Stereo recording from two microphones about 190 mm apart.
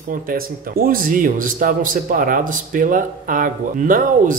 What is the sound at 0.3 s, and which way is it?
A man's voice, 50° right (ahead or behind).